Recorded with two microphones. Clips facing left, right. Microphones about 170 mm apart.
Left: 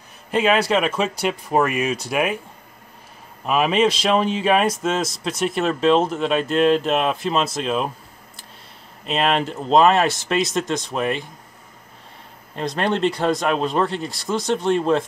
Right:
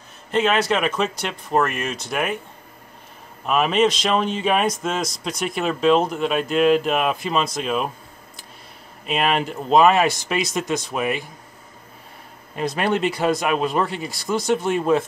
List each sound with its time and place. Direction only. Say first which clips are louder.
0.3 s speech: left 1 dB; 10° left (ahead or behind)
3.4 s speech: even; 5° left (ahead or behind)
9.0 s speech: left 1 dB; 5° right (ahead or behind)
12.5 s speech: even; 10° right (ahead or behind)